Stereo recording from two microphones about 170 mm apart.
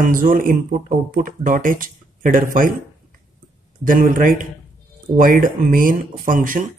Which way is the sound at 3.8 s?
55° right (ahead or behind).